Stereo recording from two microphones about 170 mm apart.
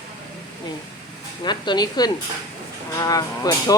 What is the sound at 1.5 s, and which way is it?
Speech, 25° left (ahead or behind).